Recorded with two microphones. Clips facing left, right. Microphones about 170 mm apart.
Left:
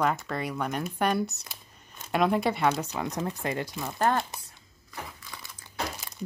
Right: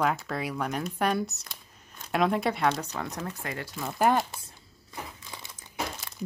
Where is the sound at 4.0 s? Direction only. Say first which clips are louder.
Right 2 dB; 15° right (ahead or behind).